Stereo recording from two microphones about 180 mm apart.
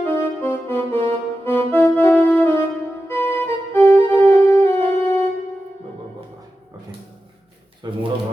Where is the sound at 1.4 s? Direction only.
10° left (ahead or behind).